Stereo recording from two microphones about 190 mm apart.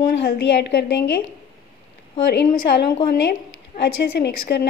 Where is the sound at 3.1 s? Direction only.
65° left (ahead or behind).